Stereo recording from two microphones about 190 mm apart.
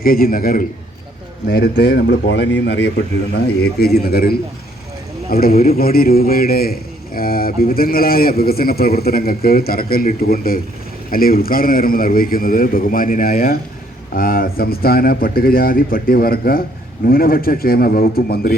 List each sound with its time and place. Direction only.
0.0 s a man's voice: 50° left (ahead or behind)
1.5 s speech: 60° left (ahead or behind)
3.3 s a man's voice: 55° left (ahead or behind)